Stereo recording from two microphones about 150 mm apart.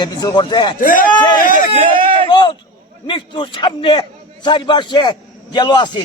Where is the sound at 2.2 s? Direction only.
35° left (ahead or behind).